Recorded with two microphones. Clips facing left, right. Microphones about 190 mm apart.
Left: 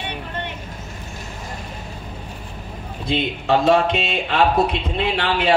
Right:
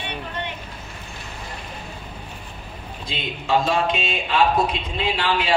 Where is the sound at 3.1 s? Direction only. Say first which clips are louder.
Left 4 dB; 60° left (ahead or behind).